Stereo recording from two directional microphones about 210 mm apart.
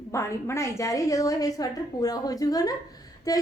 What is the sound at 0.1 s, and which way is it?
A woman's voice, 15° left (ahead or behind).